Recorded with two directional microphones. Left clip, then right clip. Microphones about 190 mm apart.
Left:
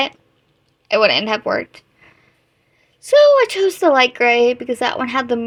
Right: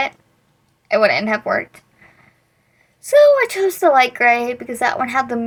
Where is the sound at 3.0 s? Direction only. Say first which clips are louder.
Left 1 dB; 40° left (ahead or behind).